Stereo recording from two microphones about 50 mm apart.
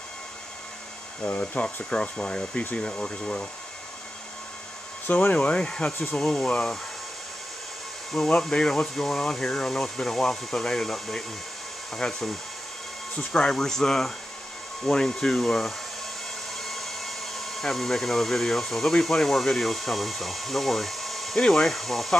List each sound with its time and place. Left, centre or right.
1.2 s speech: left
5.0 s speech: left
5.6 s speech: centre
8.3 s speech: centre